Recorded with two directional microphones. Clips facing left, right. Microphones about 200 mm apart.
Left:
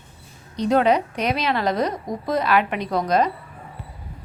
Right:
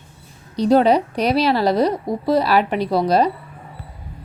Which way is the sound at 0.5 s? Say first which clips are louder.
Right 4 dB; 35° right (ahead or behind).